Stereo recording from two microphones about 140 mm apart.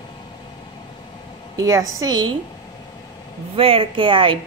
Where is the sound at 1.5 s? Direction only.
25° right (ahead or behind).